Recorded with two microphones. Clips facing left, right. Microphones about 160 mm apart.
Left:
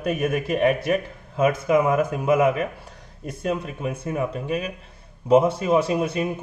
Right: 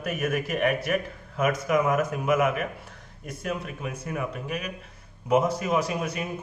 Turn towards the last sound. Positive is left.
turn(degrees=30)  # may be behind; listen again after turning